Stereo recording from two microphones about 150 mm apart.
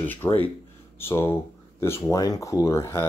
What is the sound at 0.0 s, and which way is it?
Speech, 10° left (ahead or behind).